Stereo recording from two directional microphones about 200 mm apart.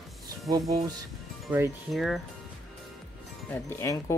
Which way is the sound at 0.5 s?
20° right (ahead or behind).